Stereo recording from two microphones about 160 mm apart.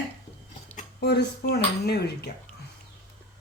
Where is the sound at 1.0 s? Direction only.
90° left.